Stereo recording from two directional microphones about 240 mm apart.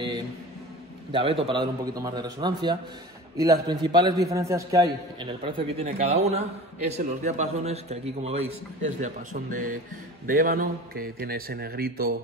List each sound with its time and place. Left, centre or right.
1.1 s a man's voice: right